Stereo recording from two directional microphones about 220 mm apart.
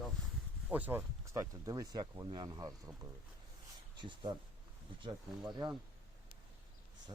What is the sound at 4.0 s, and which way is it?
Speech, 20° right (ahead or behind).